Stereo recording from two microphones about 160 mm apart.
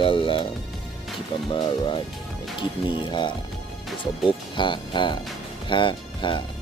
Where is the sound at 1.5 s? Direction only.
30° left (ahead or behind).